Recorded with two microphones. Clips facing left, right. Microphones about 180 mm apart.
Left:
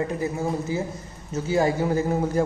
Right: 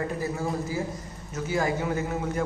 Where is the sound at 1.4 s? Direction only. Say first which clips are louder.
Left 5 dB; 30° left (ahead or behind).